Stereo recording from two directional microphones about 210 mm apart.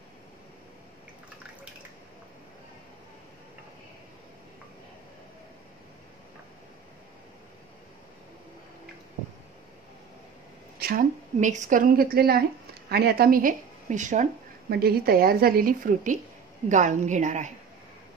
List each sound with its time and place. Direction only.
10.8 s a woman's voice: 45° right (ahead or behind)
14.7 s a woman's voice: 45° right (ahead or behind)